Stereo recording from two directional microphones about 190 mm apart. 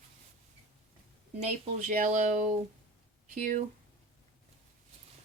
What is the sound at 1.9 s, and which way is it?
Speech, 40° right (ahead or behind).